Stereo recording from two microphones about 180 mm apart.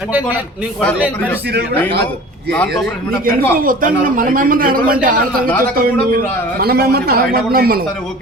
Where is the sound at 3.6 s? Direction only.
50° right (ahead or behind).